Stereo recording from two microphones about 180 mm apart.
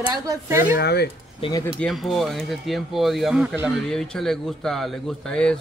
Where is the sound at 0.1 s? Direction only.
15° right (ahead or behind).